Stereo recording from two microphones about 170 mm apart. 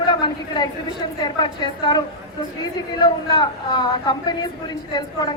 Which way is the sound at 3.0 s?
25° left (ahead or behind).